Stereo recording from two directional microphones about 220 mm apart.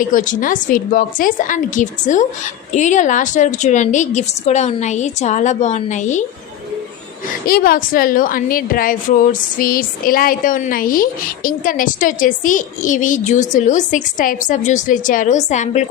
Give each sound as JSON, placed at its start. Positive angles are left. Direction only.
{"t": 0.1, "sound": "a woman's voice", "side_deg": 35}
{"t": 7.4, "sound": "a woman's voice", "side_deg": 40}